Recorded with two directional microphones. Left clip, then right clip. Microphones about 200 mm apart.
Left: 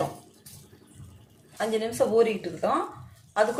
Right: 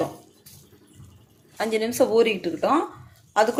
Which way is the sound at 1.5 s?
45° right (ahead or behind).